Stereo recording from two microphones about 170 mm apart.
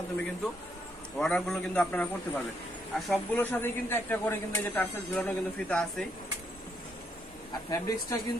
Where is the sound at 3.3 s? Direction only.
10° left (ahead or behind).